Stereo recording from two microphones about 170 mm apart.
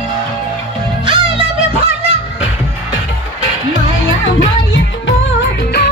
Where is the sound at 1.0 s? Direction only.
30° right (ahead or behind).